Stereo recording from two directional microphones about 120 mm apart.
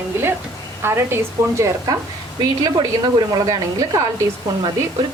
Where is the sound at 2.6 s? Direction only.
30° right (ahead or behind).